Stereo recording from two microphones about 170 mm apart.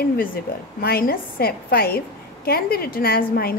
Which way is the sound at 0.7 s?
60° left (ahead or behind).